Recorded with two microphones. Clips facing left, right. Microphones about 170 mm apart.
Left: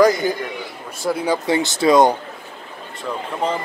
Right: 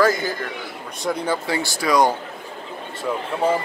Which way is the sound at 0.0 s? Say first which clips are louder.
Left 4 dB; 15° left (ahead or behind).